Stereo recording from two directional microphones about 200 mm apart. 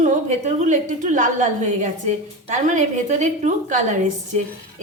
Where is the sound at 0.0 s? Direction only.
35° right (ahead or behind).